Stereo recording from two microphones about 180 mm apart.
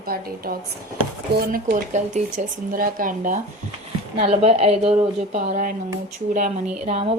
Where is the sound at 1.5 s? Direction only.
50° right (ahead or behind).